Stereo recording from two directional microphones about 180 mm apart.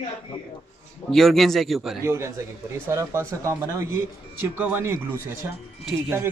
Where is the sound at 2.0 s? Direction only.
15° right (ahead or behind).